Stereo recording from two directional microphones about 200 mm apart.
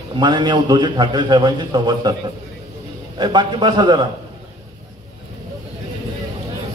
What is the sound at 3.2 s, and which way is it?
Speech, 20° right (ahead or behind).